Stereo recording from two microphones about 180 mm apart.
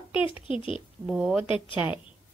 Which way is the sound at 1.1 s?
5° right (ahead or behind).